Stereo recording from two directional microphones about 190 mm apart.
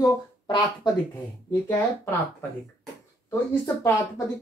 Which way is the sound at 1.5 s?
10° left (ahead or behind).